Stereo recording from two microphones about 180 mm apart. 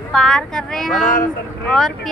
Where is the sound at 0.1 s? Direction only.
5° left (ahead or behind).